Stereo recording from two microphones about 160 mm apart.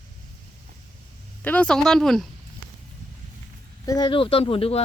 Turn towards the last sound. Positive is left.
turn(degrees=40)  # may be behind; listen again after turning